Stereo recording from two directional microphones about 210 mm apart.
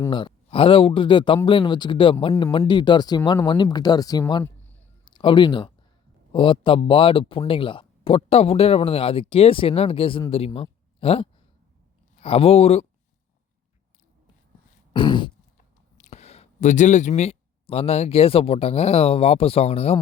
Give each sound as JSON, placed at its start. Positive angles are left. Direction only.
{"t": 0.0, "sound": "a man's voice", "side_deg": 20}
{"t": 4.4, "sound": "a sound", "side_deg": 10}
{"t": 5.0, "sound": "speech", "side_deg": 20}
{"t": 14.9, "sound": "speech", "side_deg": 20}